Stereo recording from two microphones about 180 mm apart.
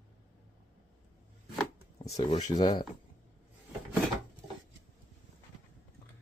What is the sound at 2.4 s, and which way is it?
Speech, 20° left (ahead or behind).